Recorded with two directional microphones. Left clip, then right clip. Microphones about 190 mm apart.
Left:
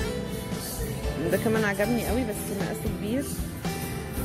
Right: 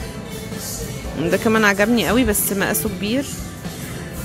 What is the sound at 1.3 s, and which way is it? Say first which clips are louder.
Speech: right 10 dB; 15° right (ahead or behind).